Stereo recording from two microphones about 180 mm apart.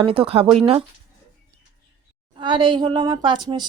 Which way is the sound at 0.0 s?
30° right (ahead or behind).